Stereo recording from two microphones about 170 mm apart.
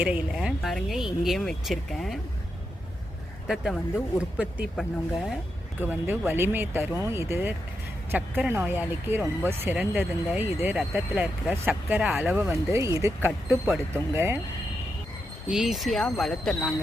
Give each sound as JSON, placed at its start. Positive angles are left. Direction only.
{"t": 0.0, "sound": "speech", "side_deg": -5}
{"t": 3.4, "sound": "speech", "side_deg": -5}
{"t": 4.8, "sound": "speech", "side_deg": 0}
{"t": 5.8, "sound": "speech", "side_deg": -10}
{"t": 12.5, "sound": "speech", "side_deg": -15}
{"t": 15.4, "sound": "speech", "side_deg": -5}